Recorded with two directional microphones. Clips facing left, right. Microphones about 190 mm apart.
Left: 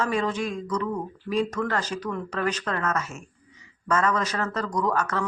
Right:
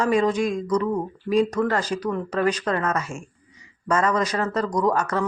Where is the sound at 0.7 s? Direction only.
30° right (ahead or behind).